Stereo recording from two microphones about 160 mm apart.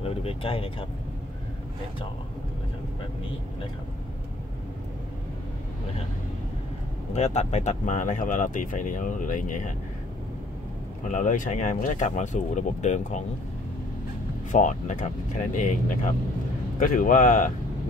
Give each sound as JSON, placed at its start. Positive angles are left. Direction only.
{"t": 0.0, "sound": "speech", "side_deg": 35}
{"t": 7.2, "sound": "speech", "side_deg": 45}
{"t": 11.1, "sound": "speech", "side_deg": 55}
{"t": 14.5, "sound": "speech", "side_deg": 50}